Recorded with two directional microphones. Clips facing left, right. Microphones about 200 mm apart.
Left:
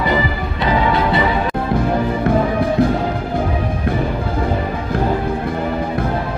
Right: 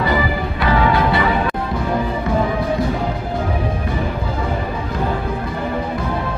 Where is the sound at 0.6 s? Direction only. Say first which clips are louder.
Even; 20° left (ahead or behind).